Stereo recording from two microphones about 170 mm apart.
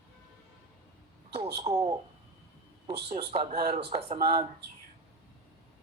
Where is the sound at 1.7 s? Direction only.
40° right (ahead or behind).